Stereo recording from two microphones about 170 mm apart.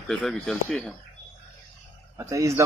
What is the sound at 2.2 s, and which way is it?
Speech, 20° right (ahead or behind).